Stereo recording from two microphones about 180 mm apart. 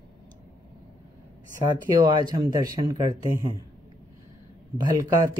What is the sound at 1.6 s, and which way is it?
Speech, 20° right (ahead or behind).